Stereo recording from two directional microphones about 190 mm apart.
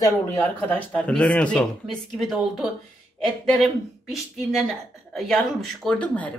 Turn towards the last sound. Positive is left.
turn(degrees=5)  # may be behind; listen again after turning